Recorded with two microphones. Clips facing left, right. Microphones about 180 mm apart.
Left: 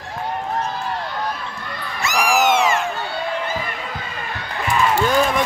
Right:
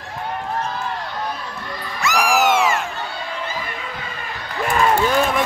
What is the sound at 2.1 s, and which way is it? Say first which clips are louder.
Cat: even; centre (ahead or behind).